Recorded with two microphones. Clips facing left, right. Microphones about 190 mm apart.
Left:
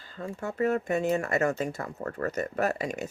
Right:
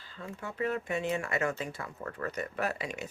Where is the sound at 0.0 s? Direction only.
45° left (ahead or behind).